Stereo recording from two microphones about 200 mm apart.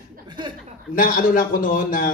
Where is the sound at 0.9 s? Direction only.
45° left (ahead or behind).